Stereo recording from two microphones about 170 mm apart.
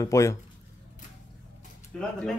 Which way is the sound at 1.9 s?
5° left (ahead or behind).